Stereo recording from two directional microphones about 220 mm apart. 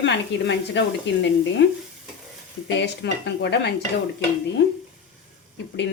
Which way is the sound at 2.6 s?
50° left (ahead or behind).